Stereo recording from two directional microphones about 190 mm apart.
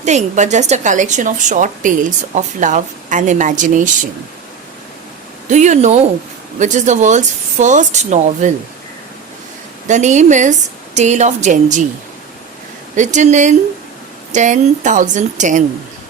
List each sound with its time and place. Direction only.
0.0 s speech: 40° right (ahead or behind)
5.5 s speech: 40° right (ahead or behind)
9.8 s speech: 40° right (ahead or behind)
13.0 s speech: 40° right (ahead or behind)